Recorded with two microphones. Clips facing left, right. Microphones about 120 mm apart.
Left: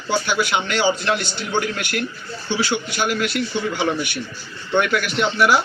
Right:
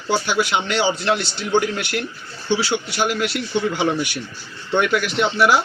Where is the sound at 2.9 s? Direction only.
20° right (ahead or behind).